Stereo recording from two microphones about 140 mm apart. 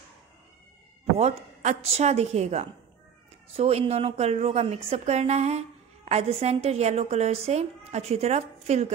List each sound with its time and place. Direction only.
1.1 s a woman's voice: 55° right (ahead or behind)